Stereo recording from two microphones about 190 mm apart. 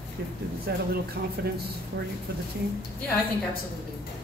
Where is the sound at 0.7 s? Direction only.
55° right (ahead or behind).